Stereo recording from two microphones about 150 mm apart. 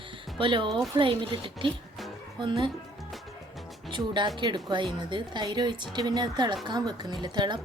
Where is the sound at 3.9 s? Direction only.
30° right (ahead or behind).